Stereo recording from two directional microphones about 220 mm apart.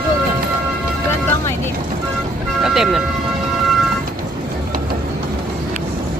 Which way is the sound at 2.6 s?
Centre (ahead or behind).